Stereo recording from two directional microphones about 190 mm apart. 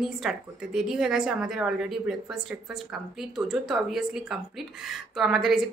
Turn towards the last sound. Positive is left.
turn(degrees=0)  # may be behind; listen again after turning